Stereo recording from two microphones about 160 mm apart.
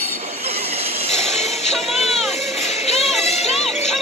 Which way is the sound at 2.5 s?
45° left (ahead or behind).